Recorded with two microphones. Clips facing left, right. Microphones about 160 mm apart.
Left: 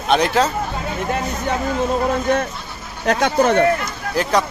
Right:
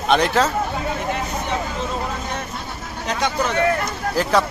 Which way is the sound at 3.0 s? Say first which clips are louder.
Left 7 dB; 55° left (ahead or behind).